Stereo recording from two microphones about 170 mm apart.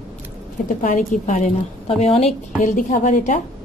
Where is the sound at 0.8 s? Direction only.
45° left (ahead or behind).